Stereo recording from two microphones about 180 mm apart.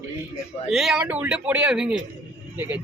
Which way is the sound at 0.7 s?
5° right (ahead or behind).